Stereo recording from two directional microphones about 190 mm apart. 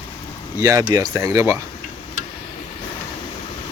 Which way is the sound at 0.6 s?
15° right (ahead or behind).